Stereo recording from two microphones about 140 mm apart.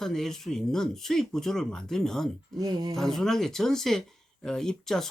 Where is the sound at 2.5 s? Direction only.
30° right (ahead or behind).